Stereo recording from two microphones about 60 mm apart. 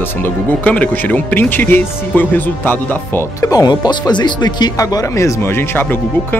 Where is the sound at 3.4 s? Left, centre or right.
Left.